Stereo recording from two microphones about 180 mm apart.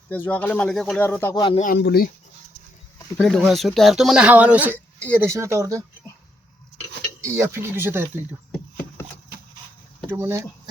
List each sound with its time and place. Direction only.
0.1 s speech: 10° left (ahead or behind)
1.0 s speech: 15° left (ahead or behind)
1.5 s speech: 45° left (ahead or behind)
1.8 s speech: 60° left (ahead or behind)
3.2 s speech: 5° left (ahead or behind); by 5.8 s 15° right (ahead or behind)
7.2 s speech: 15° right (ahead or behind)
8.5 s a sound: 10° left (ahead or behind)
10.1 s speech: 15° right (ahead or behind)